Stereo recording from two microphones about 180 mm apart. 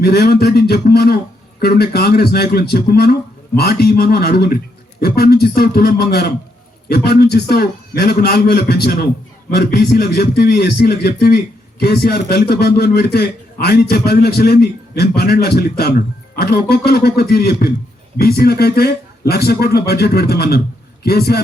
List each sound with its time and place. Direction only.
0.0 s a man's voice: 60° left (ahead or behind)